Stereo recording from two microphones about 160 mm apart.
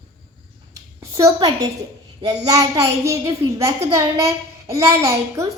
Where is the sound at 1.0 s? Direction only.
20° right (ahead or behind).